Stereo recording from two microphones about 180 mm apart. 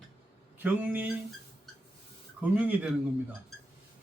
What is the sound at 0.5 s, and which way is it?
Speech, 10° right (ahead or behind).